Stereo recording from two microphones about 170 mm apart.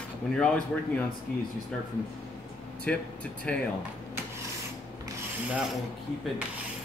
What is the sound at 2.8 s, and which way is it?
Speech, 5° left (ahead or behind).